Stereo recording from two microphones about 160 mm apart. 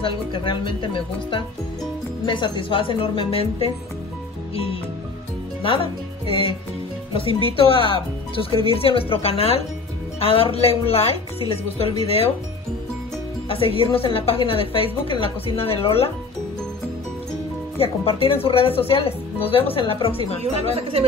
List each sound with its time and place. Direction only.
0.0 s a woman's voice: 30° left (ahead or behind)
5.6 s a woman's voice: 35° left (ahead or behind)
13.5 s a woman's voice: 35° left (ahead or behind)
17.7 s a woman's voice: 35° left (ahead or behind)